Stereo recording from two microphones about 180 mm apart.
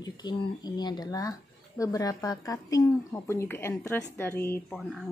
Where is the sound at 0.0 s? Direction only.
25° left (ahead or behind).